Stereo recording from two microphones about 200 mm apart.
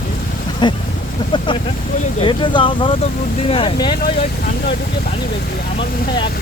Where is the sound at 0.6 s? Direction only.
25° left (ahead or behind).